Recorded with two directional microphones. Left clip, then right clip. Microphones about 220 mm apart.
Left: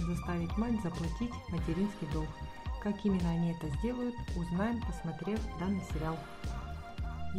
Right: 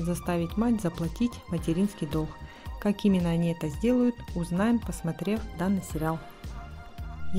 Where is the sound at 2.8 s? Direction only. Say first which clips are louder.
Right 8 dB; 35° right (ahead or behind).